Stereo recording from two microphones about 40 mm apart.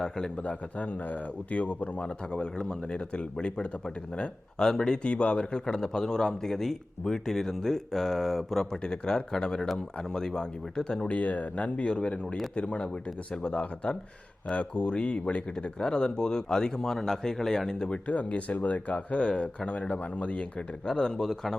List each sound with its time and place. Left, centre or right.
0.3 s speech: left
2.0 s a man's voice: left
11.0 s a man's voice: left; by 17.8 s centre
17.8 s speech: left
18.9 s a man's voice: left
20.8 s a man's voice: centre